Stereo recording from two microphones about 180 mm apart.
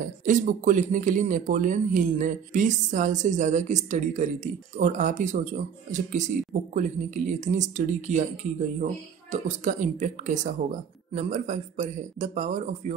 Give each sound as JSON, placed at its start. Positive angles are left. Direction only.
{"t": 0.0, "sound": "speech", "side_deg": -45}
{"t": 9.3, "sound": "a man's voice", "side_deg": -45}